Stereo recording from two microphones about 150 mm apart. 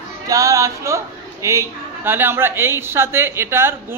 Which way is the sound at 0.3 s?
20° right (ahead or behind).